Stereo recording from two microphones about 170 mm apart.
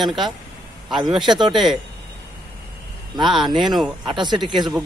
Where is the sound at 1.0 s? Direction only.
25° right (ahead or behind).